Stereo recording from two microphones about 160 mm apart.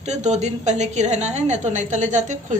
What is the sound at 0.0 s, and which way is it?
A woman's voice, 45° right (ahead or behind).